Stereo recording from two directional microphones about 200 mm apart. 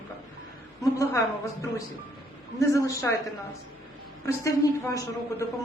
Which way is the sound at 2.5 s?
15° left (ahead or behind).